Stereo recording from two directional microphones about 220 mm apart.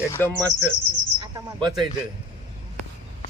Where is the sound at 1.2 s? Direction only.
20° right (ahead or behind).